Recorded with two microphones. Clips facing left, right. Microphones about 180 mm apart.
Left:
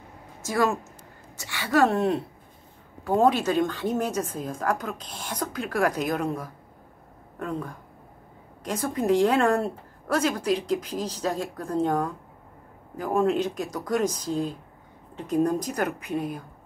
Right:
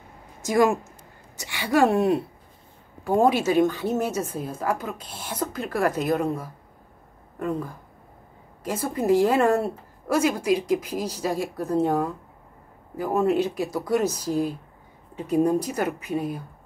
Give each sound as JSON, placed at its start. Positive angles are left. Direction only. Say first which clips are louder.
{"t": 0.4, "sound": "a woman's voice", "louder": "right 4 dB", "side_deg": -15}